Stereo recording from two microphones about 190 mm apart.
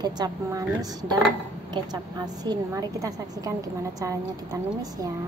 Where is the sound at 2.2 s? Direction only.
20° right (ahead or behind).